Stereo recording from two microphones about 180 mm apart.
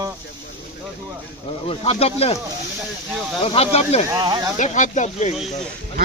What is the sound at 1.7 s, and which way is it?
Speech, 35° left (ahead or behind).